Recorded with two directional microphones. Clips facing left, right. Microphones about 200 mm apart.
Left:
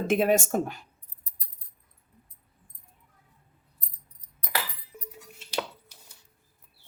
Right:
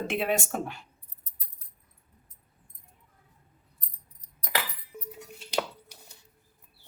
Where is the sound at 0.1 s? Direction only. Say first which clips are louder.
Left 8 dB; 45° left (ahead or behind).